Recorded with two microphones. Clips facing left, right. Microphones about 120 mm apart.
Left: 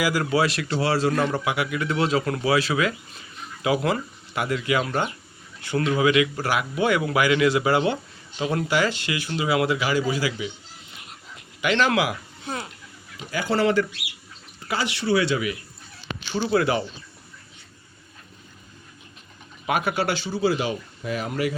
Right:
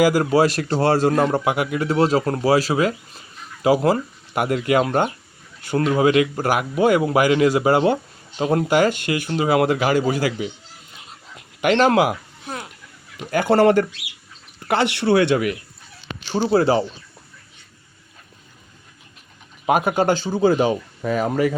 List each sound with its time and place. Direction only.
0.0 s speech: 40° right (ahead or behind)
11.3 s a sound: 45° right (ahead or behind)
12.5 s speech: 5° right (ahead or behind)
13.1 s speech: 55° right (ahead or behind)
16.3 s speech: 35° right (ahead or behind)
19.6 s speech: 45° right (ahead or behind)